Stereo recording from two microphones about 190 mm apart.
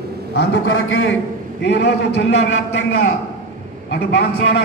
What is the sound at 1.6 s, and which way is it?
Speech, 65° left (ahead or behind).